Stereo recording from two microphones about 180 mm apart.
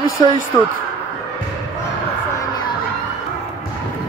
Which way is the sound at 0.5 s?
20° left (ahead or behind).